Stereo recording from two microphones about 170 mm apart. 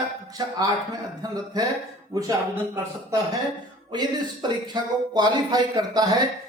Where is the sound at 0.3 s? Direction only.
20° right (ahead or behind).